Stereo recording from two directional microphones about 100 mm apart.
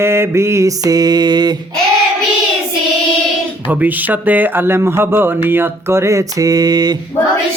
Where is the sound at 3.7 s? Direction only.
15° right (ahead or behind); by 6.9 s 40° right (ahead or behind).